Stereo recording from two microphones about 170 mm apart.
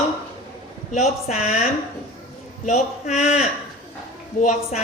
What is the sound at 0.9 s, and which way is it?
A man's voice, 45° left (ahead or behind).